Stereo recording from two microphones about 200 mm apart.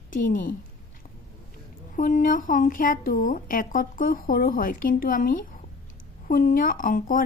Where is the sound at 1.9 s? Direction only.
40° left (ahead or behind).